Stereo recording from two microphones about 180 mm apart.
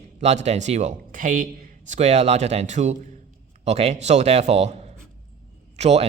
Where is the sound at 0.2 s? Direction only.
40° right (ahead or behind).